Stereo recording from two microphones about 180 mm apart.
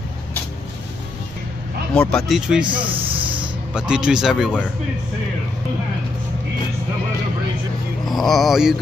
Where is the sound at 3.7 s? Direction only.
5° right (ahead or behind).